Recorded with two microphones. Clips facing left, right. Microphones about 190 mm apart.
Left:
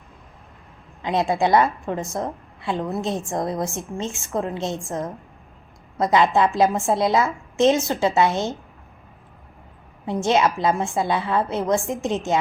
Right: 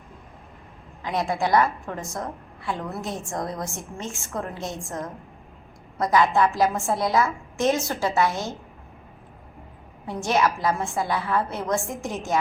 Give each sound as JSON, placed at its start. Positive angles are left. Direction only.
{"t": 1.0, "sound": "a woman's voice", "side_deg": 25}
{"t": 10.1, "sound": "a woman's voice", "side_deg": 20}